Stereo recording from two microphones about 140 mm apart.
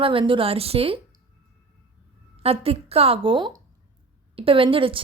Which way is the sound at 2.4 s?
45° right (ahead or behind).